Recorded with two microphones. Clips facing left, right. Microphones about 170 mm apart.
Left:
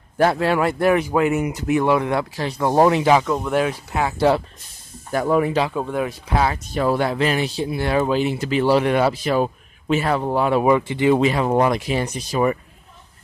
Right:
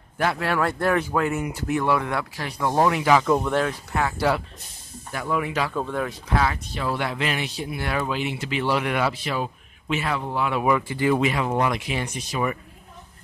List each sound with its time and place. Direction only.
0.2 s speech: 35° left (ahead or behind)
0.5 s speech: 15° left (ahead or behind)
3.4 s speech: 10° left (ahead or behind)
5.1 s speech: 40° left (ahead or behind)
5.6 s speech: 15° left (ahead or behind)
6.7 s speech: 45° left (ahead or behind)